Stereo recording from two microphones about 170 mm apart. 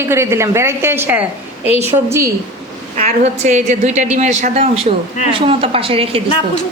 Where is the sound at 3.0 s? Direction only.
40° right (ahead or behind).